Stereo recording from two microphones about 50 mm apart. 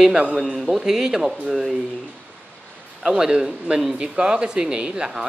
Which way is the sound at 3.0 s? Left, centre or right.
Centre.